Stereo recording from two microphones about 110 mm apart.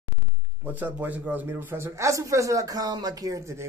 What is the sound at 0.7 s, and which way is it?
Speech, 15° right (ahead or behind).